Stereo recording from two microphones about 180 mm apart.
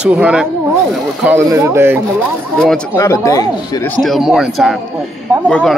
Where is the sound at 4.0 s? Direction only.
Centre (ahead or behind).